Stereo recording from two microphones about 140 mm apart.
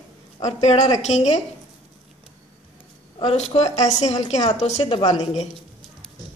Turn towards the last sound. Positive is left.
turn(degrees=50)  # may be behind; listen again after turning